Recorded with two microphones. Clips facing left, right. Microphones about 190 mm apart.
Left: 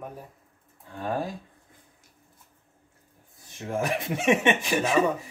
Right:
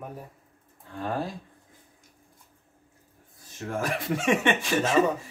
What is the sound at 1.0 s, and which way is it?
Speech, 15° left (ahead or behind).